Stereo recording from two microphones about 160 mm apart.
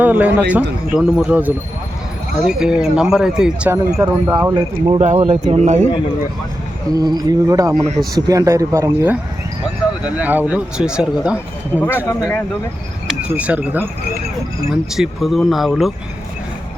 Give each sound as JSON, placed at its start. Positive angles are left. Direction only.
{"t": 0.0, "sound": "a man's voice", "side_deg": -10}
{"t": 3.9, "sound": "speech", "side_deg": -20}
{"t": 4.9, "sound": "speech", "side_deg": -40}
{"t": 6.9, "sound": "speech", "side_deg": -25}
{"t": 10.2, "sound": "speech", "side_deg": -10}
{"t": 11.7, "sound": "speech", "side_deg": 15}
{"t": 13.2, "sound": "speech", "side_deg": -10}